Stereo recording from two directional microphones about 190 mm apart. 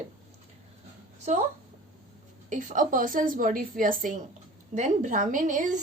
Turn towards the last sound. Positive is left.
turn(degrees=-40)  # may be behind; listen again after turning